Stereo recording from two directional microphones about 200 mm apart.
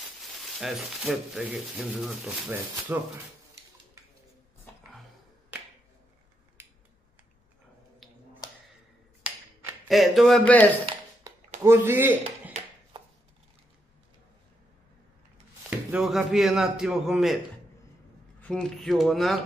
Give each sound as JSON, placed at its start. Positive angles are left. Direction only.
{"t": 0.2, "sound": "speech", "side_deg": 0}
{"t": 9.8, "sound": "speech", "side_deg": 0}
{"t": 11.3, "sound": "a sound", "side_deg": -15}
{"t": 11.6, "sound": "speech", "side_deg": -10}
{"t": 12.9, "sound": "chopping", "side_deg": -25}
{"t": 15.9, "sound": "speech", "side_deg": -5}
{"t": 18.4, "sound": "speech", "side_deg": 5}